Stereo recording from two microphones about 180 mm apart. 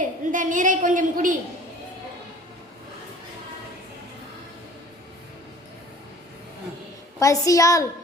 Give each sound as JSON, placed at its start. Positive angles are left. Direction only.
{"t": 0.3, "sound": "a woman's voice", "side_deg": -45}
{"t": 7.2, "sound": "a woman's voice", "side_deg": 20}